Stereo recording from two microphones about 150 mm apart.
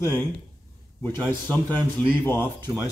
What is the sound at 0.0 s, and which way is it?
Speech, 15° left (ahead or behind).